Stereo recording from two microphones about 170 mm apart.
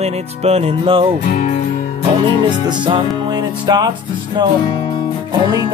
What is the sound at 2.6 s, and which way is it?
Music, 25° right (ahead or behind).